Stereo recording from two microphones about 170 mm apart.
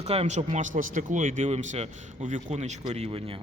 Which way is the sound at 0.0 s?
40° right (ahead or behind).